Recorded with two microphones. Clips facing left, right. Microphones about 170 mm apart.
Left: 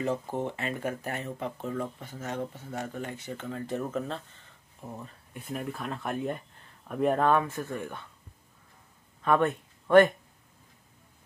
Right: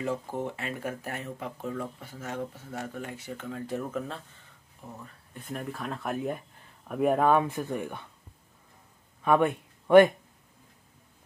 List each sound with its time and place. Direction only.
0.5 s speech: 5° right (ahead or behind)
5.3 s speech: 5° left (ahead or behind); by 8.1 s 15° right (ahead or behind)
9.2 s speech: 10° right (ahead or behind)